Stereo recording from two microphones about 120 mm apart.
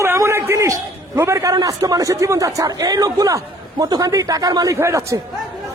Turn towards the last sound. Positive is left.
turn(degrees=-25)  # may be behind; listen again after turning